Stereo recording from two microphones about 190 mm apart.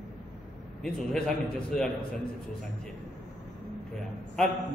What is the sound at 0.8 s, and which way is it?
A man's voice, 5° left (ahead or behind).